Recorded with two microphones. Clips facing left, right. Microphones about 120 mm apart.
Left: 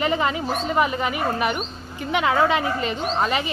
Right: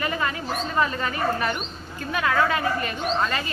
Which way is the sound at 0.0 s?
20° left (ahead or behind).